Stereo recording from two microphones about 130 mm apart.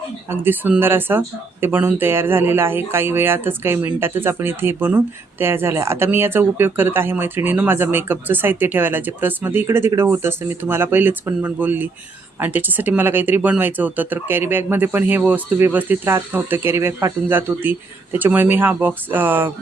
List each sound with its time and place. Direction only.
0.3 s speech: 15° right (ahead or behind)